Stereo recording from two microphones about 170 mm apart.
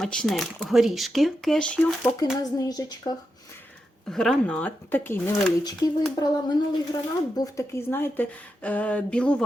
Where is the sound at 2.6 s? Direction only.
25° left (ahead or behind).